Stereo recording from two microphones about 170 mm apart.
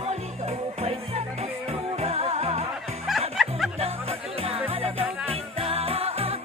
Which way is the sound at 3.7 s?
35° right (ahead or behind).